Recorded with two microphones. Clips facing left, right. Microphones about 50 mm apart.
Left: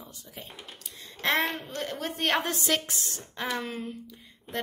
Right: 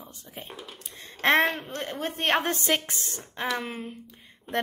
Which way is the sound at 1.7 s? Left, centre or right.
Right.